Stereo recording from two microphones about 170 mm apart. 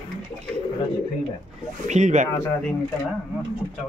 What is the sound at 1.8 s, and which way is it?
Speech, 45° right (ahead or behind).